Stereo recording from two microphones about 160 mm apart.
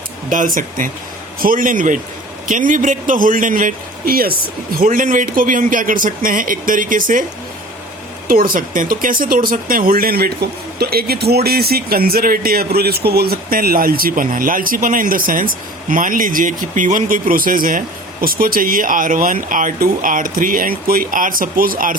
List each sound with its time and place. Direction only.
0.3 s speech: 55° right (ahead or behind)
8.3 s speech: 65° right (ahead or behind)